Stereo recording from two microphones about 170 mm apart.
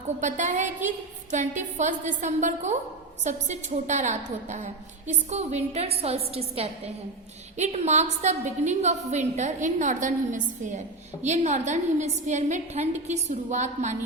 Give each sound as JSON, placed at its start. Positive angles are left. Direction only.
{"t": 0.2, "sound": "a woman's voice", "side_deg": -45}